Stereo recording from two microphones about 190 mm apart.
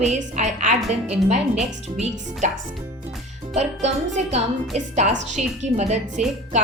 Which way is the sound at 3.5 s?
35° right (ahead or behind).